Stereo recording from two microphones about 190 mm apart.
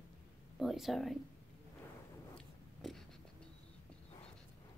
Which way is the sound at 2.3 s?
Centre (ahead or behind).